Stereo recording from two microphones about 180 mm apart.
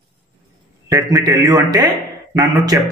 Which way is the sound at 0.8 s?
15° right (ahead or behind).